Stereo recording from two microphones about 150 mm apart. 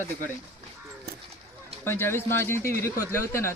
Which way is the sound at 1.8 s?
15° left (ahead or behind).